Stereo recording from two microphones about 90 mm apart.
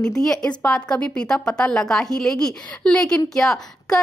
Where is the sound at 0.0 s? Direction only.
5° left (ahead or behind).